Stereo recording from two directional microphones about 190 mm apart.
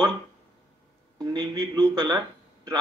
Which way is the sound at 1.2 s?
20° right (ahead or behind).